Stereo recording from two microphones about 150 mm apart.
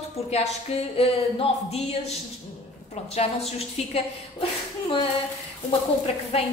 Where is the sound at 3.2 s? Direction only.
40° left (ahead or behind).